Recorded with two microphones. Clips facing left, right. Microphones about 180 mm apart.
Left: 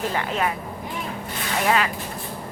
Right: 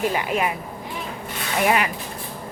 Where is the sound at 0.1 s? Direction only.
10° right (ahead or behind).